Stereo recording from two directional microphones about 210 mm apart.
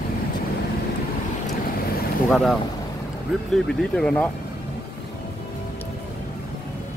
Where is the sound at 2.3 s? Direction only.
Centre (ahead or behind).